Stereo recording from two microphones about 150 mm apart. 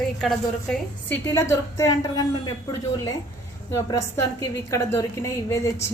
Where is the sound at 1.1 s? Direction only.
15° left (ahead or behind).